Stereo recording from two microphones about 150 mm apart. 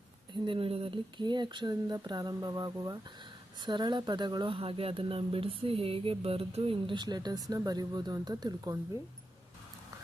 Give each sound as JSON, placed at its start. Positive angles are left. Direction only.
{"t": 0.4, "sound": "speech", "side_deg": -35}